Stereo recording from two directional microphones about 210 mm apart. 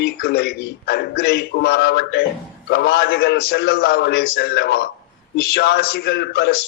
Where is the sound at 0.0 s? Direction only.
50° left (ahead or behind).